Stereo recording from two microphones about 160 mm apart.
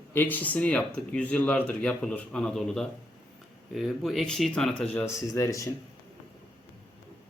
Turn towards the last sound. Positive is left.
turn(degrees=20)  # may be behind; listen again after turning